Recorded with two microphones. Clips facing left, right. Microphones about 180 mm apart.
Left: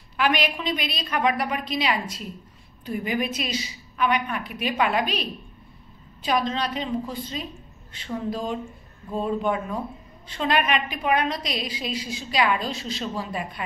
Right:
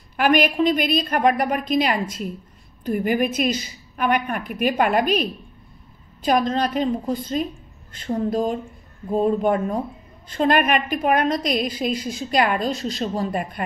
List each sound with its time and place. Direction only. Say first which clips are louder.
0.2 s a woman's voice: right 7 dB; 45° right (ahead or behind)